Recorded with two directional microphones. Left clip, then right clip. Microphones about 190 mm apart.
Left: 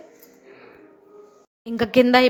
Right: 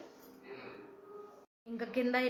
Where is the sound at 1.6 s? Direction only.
55° left (ahead or behind).